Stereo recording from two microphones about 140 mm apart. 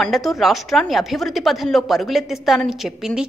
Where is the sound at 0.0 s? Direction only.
Centre (ahead or behind).